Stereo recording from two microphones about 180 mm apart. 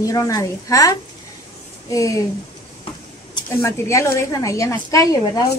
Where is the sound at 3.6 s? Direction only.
15° left (ahead or behind).